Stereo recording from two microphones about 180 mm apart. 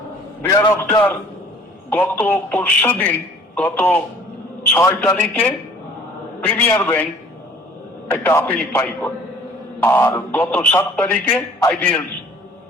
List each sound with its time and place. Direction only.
0.4 s a man's voice: 20° left (ahead or behind)
4.6 s a sound: 10° left (ahead or behind)
4.9 s a man's voice: 10° left (ahead or behind)
6.7 s a man's voice: 10° left (ahead or behind)
8.1 s a man's voice: 15° left (ahead or behind)